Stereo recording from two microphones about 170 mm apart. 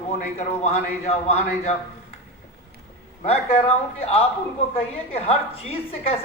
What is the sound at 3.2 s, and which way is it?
A man's voice, 40° left (ahead or behind).